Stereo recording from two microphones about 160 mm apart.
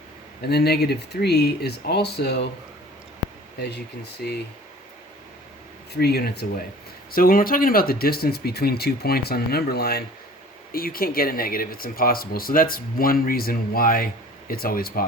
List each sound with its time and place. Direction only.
0.4 s speech: 90° left
3.6 s speech: 90° left
5.9 s speech: 85° left
7.1 s speech: 65° left (ahead or behind)